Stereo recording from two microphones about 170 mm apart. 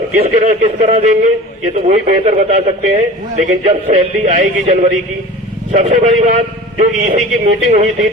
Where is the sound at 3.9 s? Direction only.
45° right (ahead or behind).